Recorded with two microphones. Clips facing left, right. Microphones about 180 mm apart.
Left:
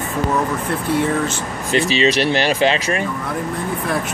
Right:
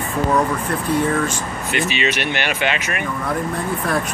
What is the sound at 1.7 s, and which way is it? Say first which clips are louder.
Speech: left 6 dB; 35° left (ahead or behind).